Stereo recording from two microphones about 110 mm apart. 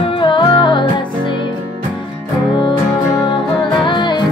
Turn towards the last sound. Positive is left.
turn(degrees=45)  # may be behind; listen again after turning